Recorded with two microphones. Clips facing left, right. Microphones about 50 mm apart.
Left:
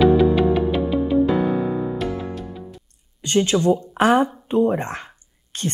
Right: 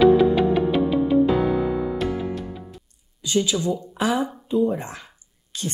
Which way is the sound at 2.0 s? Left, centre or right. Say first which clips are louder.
Right 1 dB; centre.